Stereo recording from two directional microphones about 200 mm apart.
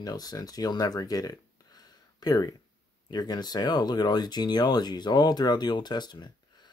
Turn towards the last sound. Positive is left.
turn(degrees=20)  # may be behind; listen again after turning